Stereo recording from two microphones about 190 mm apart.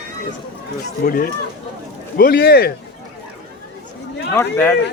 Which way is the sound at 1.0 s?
50° left (ahead or behind).